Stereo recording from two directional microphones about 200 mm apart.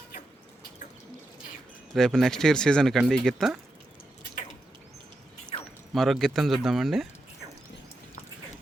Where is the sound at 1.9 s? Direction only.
Centre (ahead or behind).